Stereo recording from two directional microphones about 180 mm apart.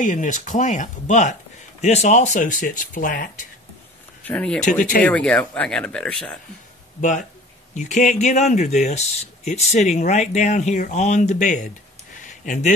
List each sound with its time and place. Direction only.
0.0 s speech: 45° left (ahead or behind)
4.2 s speech: 10° left (ahead or behind)
4.6 s speech: 45° left (ahead or behind)
5.0 s speech: 5° left (ahead or behind)
7.0 s speech: 45° left (ahead or behind)
12.2 s a sound: 45° left (ahead or behind)